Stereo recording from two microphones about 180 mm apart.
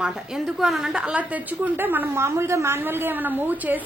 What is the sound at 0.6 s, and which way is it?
A woman's voice, centre (ahead or behind).